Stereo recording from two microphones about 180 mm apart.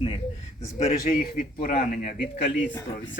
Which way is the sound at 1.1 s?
50° left (ahead or behind).